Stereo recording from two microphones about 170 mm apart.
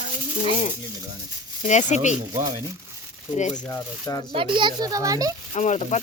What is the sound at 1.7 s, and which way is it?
Speech, 45° left (ahead or behind).